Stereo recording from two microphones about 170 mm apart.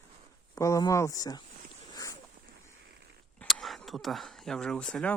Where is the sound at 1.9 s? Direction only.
20° left (ahead or behind).